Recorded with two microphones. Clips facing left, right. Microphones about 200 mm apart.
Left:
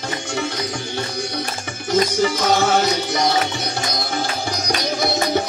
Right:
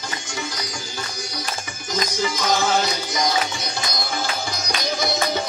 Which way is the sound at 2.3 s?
65° left (ahead or behind).